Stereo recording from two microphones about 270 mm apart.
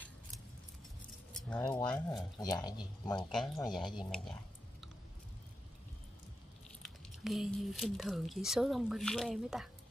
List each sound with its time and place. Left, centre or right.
1.6 s speech: centre
1.9 s speech: centre
4.0 s speech: centre
6.8 s speech: centre